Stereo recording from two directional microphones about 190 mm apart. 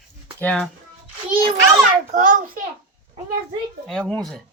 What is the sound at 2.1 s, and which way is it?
Speech, 40° right (ahead or behind).